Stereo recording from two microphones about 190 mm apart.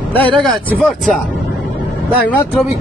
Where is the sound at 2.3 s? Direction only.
10° left (ahead or behind).